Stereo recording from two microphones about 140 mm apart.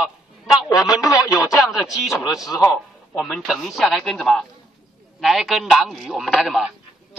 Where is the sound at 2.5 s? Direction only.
15° left (ahead or behind).